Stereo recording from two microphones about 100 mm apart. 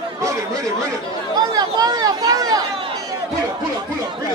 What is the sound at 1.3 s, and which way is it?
Speech, 40° right (ahead or behind).